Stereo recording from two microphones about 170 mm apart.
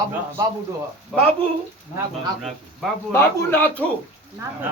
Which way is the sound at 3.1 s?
15° left (ahead or behind).